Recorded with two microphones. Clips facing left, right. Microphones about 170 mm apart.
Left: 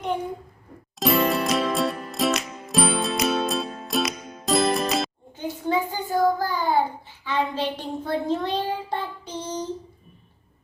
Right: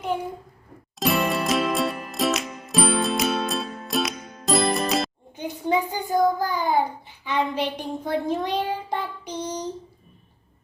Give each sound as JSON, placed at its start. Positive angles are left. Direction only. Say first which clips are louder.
{"t": 0.9, "sound": "music", "louder": "left 2 dB", "side_deg": 0}
{"t": 5.4, "sound": "child singing", "louder": "right 1 dB", "side_deg": -15}